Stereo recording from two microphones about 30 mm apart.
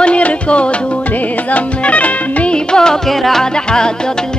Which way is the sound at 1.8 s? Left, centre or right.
Left.